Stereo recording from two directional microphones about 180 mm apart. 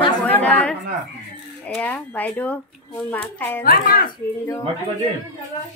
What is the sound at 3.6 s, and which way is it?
Speech, 55° left (ahead or behind).